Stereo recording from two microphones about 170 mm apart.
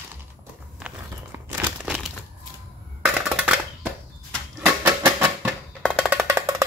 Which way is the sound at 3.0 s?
5° right (ahead or behind).